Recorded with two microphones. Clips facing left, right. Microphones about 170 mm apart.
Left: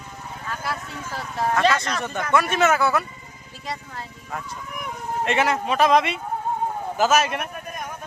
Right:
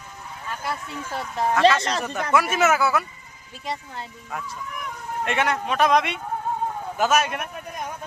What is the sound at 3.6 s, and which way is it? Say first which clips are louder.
Speech: right 1 dB; 20° right (ahead or behind).